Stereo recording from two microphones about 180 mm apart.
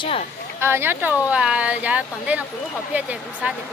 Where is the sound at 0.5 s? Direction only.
15° right (ahead or behind).